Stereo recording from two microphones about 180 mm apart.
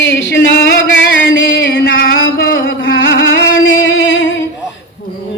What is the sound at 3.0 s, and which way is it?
Music, 70° left (ahead or behind).